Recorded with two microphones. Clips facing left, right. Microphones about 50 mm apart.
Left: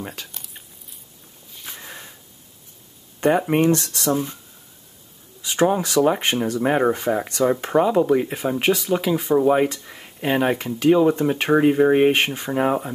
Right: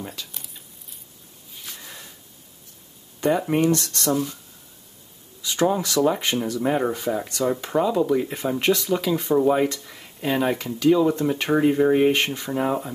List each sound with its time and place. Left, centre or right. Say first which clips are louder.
0.0 s speech: left 2 dB; left
1.7 s sniff: left 4 dB; left
3.2 s speech: left 3 dB; left
3.9 s speech: left 1 dB; centre
5.4 s speech: left 2 dB; left
8.3 s speech: left 1 dB; centre